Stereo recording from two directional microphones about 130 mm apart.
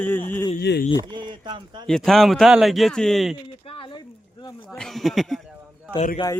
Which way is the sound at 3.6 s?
40° left (ahead or behind).